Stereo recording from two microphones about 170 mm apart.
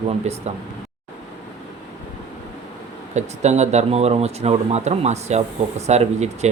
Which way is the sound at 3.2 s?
45° right (ahead or behind).